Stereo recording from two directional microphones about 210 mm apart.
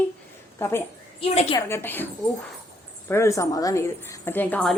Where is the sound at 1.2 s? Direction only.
25° left (ahead or behind).